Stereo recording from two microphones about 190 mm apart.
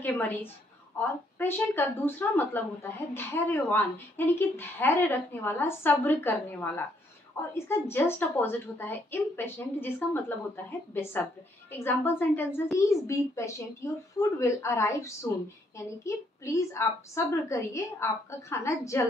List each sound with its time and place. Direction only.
0.0 s speech: 10° left (ahead or behind)